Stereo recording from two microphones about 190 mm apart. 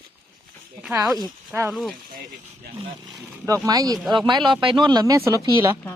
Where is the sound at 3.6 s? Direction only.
20° right (ahead or behind).